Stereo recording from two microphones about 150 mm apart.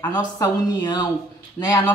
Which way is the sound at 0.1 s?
25° left (ahead or behind).